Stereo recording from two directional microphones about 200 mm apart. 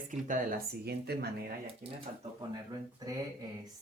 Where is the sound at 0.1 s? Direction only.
40° right (ahead or behind).